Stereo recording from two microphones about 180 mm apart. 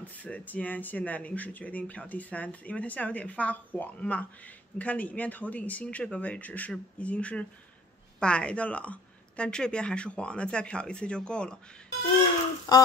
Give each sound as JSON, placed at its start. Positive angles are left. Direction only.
{"t": 0.0, "sound": "speech", "side_deg": 10}
{"t": 12.7, "sound": "speech", "side_deg": 20}